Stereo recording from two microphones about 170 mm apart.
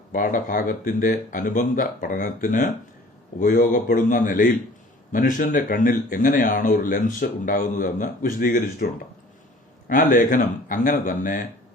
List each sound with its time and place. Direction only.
0.1 s speech: 50° left (ahead or behind)
9.9 s speech: 50° left (ahead or behind)